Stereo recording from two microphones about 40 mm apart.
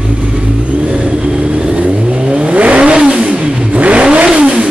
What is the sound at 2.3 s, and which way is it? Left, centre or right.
Vehicle, right.